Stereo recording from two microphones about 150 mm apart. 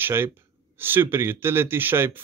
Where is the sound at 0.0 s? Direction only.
15° right (ahead or behind).